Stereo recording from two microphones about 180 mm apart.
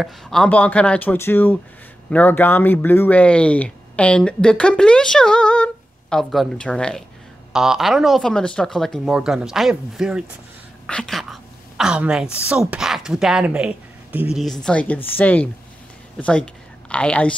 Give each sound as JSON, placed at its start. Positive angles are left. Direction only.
{"t": 0.0, "sound": "a woman's voice", "side_deg": 5}